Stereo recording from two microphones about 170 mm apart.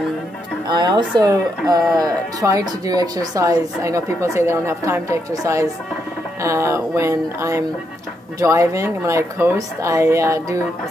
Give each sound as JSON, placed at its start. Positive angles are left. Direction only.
{"t": 0.7, "sound": "speech", "side_deg": -25}